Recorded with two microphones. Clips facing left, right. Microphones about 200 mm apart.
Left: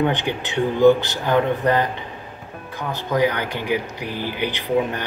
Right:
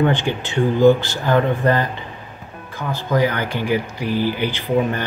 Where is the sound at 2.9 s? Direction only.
15° left (ahead or behind).